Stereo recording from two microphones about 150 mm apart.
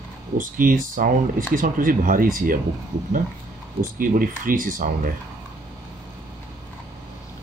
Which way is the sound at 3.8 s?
65° right (ahead or behind).